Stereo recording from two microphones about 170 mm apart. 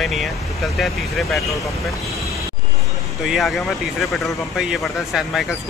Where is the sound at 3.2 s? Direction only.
Centre (ahead or behind).